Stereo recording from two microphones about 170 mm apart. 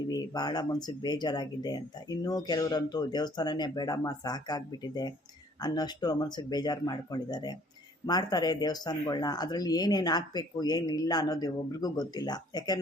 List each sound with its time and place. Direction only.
0.0 s speech: 25° left (ahead or behind)